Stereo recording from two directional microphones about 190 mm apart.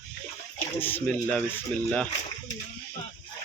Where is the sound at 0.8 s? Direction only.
10° left (ahead or behind).